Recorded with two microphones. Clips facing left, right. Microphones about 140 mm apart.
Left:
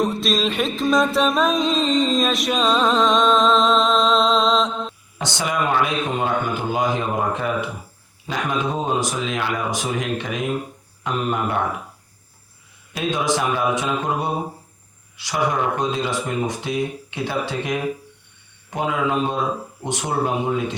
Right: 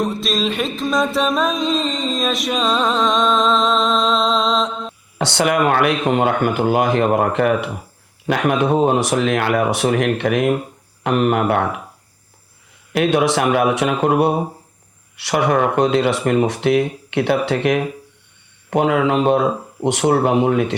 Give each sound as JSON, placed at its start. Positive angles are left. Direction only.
{"t": 0.0, "sound": "music", "side_deg": 0}
{"t": 5.1, "sound": "speech", "side_deg": -65}
{"t": 12.9, "sound": "speech", "side_deg": -65}